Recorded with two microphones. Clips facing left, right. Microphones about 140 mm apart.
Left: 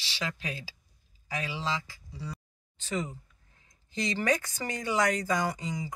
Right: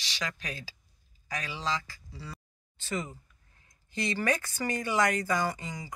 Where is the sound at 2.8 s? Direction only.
15° left (ahead or behind).